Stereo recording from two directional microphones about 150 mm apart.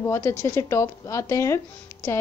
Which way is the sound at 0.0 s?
15° left (ahead or behind).